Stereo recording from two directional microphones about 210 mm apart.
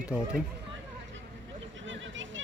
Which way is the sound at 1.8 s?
65° right (ahead or behind).